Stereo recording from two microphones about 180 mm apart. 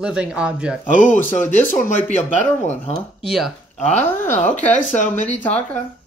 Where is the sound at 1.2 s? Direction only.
10° left (ahead or behind).